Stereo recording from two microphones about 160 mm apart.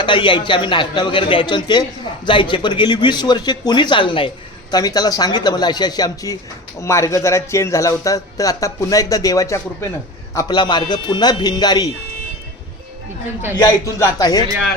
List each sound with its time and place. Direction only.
0.0 s speech: 30° left (ahead or behind)
13.6 s speech: 20° left (ahead or behind)